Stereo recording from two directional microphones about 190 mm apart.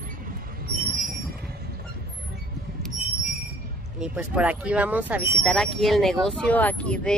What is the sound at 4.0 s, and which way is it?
Speech, 5° right (ahead or behind).